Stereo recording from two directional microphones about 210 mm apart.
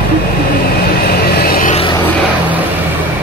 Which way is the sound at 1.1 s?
45° left (ahead or behind).